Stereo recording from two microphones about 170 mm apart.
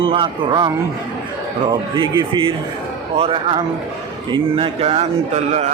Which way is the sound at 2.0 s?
30° right (ahead or behind).